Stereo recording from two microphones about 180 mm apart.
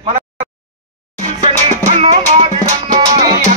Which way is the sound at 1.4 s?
40° right (ahead or behind).